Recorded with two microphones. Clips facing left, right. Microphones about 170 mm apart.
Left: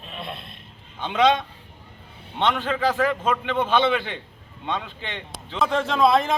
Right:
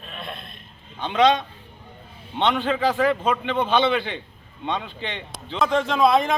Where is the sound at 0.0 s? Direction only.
25° left (ahead or behind).